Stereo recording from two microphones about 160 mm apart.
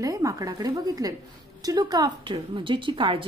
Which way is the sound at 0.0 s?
20° right (ahead or behind).